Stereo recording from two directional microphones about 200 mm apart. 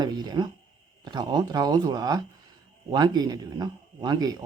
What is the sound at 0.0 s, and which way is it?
Speech, 20° right (ahead or behind).